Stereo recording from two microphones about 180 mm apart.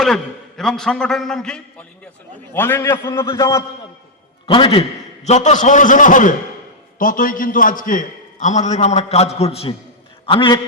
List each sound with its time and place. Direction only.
0.0 s a man's voice: centre (ahead or behind); by 3.6 s 15° left (ahead or behind)
4.4 s a man's voice: 30° left (ahead or behind)